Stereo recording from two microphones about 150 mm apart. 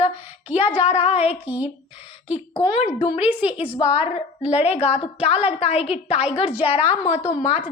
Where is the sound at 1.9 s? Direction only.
40° left (ahead or behind).